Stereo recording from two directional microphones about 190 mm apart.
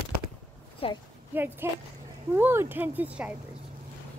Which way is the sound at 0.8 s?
30° left (ahead or behind).